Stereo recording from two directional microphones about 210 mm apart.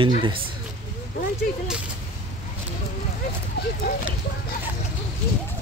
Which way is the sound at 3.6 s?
50° left (ahead or behind).